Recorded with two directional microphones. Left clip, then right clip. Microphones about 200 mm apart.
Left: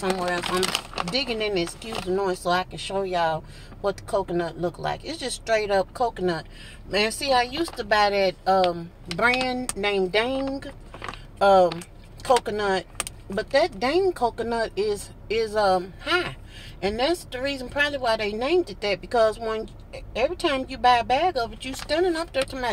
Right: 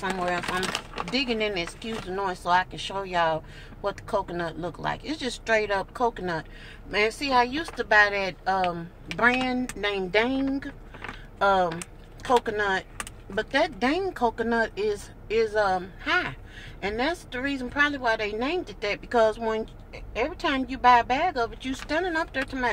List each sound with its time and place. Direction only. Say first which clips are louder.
0.0 s speech: left 2 dB; 30° left (ahead or behind)
1.1 s speech: left 1 dB; 15° left (ahead or behind)